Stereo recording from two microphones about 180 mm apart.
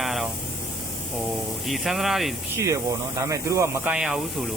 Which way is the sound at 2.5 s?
15° right (ahead or behind).